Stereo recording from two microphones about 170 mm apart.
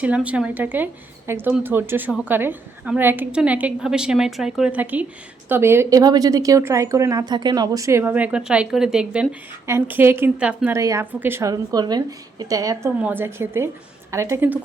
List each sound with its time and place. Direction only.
0.0 s a woman's voice: 10° right (ahead or behind)